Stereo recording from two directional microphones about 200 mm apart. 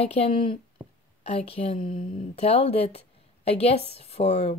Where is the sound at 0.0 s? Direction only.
30° left (ahead or behind).